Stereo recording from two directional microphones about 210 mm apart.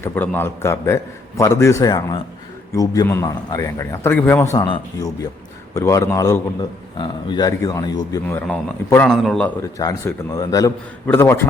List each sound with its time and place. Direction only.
0.0 s a man's voice: 10° left (ahead or behind)
4.5 s a man's voice: 20° left (ahead or behind); by 9.5 s centre (ahead or behind)
9.6 s a man's voice: 15° left (ahead or behind)